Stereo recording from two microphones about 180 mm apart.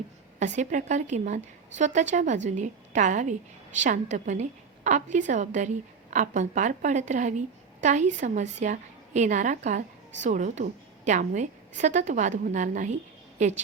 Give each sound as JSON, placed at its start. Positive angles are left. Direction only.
{"t": 0.3, "sound": "a woman's voice", "side_deg": -40}